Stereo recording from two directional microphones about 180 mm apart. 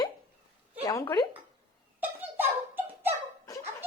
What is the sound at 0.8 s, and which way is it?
Speech, 20° left (ahead or behind).